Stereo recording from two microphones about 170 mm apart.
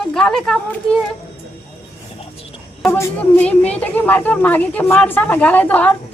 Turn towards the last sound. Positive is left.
turn(degrees=10)  # may be behind; listen again after turning